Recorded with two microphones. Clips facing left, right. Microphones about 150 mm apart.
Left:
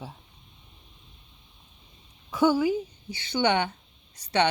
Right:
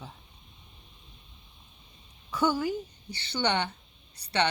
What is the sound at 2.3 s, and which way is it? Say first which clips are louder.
A woman's voice: left 5 dB; 10° left (ahead or behind).